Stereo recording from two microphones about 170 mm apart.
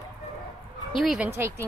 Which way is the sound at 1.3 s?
15° right (ahead or behind).